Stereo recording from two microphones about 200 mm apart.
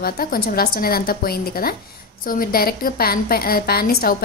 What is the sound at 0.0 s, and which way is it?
A woman's voice, 45° left (ahead or behind).